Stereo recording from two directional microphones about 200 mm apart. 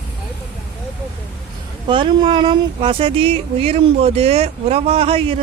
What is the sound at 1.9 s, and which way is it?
Speech, 25° right (ahead or behind).